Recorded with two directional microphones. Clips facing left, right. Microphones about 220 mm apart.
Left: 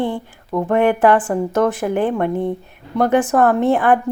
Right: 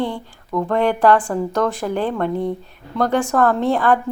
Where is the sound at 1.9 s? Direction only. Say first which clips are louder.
Left 3 dB; 15° left (ahead or behind).